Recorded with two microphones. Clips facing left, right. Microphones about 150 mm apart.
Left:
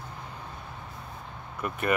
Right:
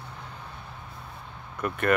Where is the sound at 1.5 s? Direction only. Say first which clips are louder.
Right 3 dB; 5° left (ahead or behind).